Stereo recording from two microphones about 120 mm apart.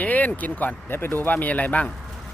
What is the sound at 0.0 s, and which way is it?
Speech, 15° left (ahead or behind).